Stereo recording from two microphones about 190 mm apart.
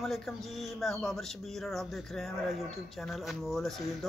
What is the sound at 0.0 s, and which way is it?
Speech, centre (ahead or behind).